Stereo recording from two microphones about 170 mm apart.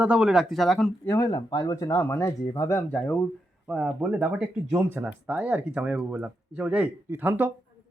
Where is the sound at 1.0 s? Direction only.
15° left (ahead or behind).